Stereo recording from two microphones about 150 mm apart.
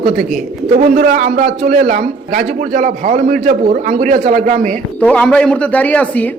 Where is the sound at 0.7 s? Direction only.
90° right.